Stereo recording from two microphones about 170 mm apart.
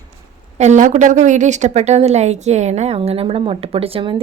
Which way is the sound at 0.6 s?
45° right (ahead or behind).